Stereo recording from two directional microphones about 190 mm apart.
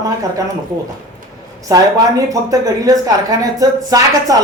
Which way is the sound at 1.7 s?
20° right (ahead or behind).